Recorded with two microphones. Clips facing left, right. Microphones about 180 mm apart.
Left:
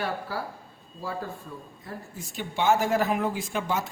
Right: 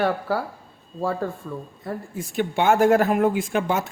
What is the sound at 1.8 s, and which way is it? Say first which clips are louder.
Speech: right 9 dB; 65° right (ahead or behind).